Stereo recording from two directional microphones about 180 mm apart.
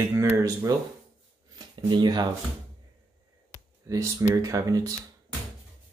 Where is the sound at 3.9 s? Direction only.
15° right (ahead or behind).